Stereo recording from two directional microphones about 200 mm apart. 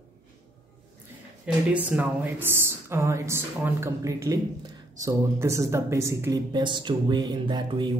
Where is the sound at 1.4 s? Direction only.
5° right (ahead or behind).